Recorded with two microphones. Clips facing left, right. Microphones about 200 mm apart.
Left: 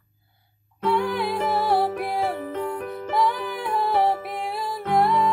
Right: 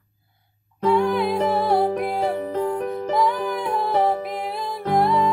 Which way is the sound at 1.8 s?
35° right (ahead or behind).